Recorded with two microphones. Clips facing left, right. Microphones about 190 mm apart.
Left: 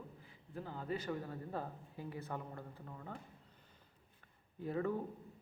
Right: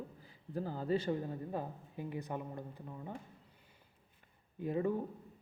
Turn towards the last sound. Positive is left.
turn(degrees=-15)  # may be behind; listen again after turning